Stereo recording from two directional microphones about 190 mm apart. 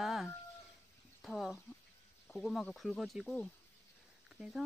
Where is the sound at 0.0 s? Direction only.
Centre (ahead or behind).